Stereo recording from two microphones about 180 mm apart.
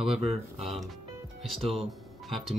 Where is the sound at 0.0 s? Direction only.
Centre (ahead or behind).